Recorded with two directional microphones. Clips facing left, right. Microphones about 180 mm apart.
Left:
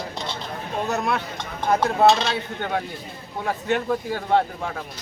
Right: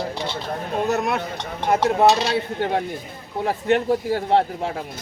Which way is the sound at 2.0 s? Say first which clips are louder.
Even; 20° right (ahead or behind).